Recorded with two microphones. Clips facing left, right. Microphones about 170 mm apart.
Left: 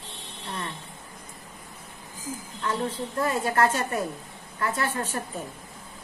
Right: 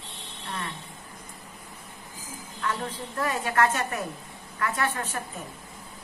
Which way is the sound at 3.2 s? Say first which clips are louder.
Left 1 dB; 30° left (ahead or behind).